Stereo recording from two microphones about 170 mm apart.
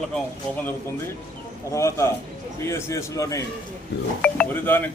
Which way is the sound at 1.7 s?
15° left (ahead or behind).